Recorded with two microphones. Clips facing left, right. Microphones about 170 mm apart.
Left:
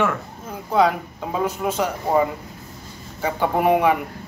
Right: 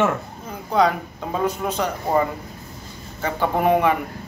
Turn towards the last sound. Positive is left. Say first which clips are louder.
# left 1 dB
turn(degrees=10)  # may be behind; listen again after turning